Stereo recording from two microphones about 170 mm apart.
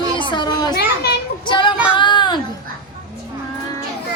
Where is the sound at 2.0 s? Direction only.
25° left (ahead or behind).